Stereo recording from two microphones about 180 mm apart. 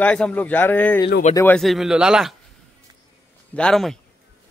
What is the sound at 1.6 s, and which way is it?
Speech, centre (ahead or behind).